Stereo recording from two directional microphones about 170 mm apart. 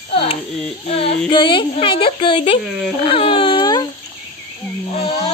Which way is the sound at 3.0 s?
30° left (ahead or behind).